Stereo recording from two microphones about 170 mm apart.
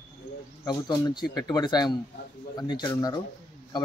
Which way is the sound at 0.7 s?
25° left (ahead or behind).